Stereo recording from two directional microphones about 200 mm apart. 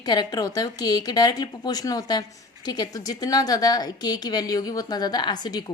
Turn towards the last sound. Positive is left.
turn(degrees=20)  # may be behind; listen again after turning